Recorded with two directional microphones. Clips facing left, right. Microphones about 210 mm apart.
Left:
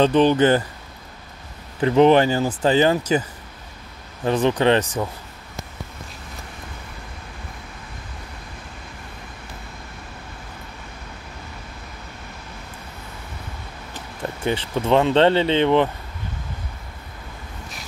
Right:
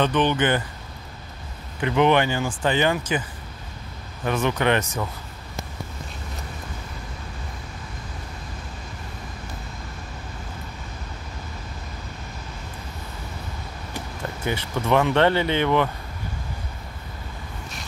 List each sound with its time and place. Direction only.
0.0 s speech: 35° left (ahead or behind)
1.8 s speech: 35° left (ahead or behind)
14.4 s speech: 25° left (ahead or behind)